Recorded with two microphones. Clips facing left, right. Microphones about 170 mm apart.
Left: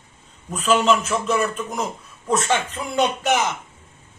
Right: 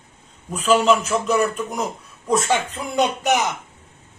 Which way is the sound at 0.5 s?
10° right (ahead or behind).